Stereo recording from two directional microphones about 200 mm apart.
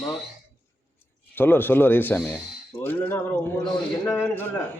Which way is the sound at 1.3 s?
10° left (ahead or behind).